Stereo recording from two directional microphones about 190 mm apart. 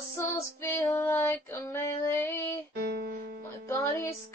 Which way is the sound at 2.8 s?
55° right (ahead or behind).